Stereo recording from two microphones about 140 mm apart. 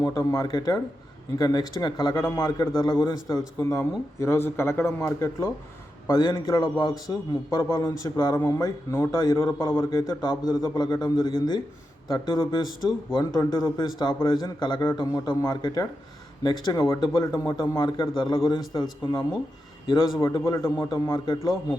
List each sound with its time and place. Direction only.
0.0 s a man's voice: 25° left (ahead or behind)